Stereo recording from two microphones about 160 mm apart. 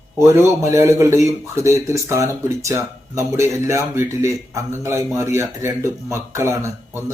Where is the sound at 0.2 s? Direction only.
15° right (ahead or behind).